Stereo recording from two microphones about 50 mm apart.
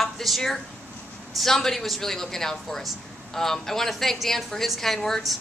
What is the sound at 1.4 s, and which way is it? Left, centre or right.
A woman's voice, centre.